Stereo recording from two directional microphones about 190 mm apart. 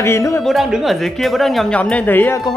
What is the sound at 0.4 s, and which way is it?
Speech, centre (ahead or behind).